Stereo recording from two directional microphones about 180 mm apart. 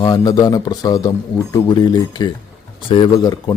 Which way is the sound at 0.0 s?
20° left (ahead or behind).